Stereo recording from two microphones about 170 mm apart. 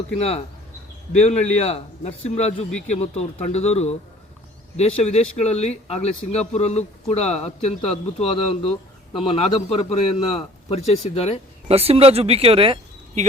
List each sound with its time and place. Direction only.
1.2 s speech: 40° left (ahead or behind)
11.7 s speech: 35° right (ahead or behind)